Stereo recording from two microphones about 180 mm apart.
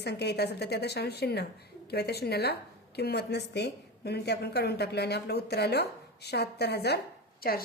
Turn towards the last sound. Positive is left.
turn(degrees=55)  # may be behind; listen again after turning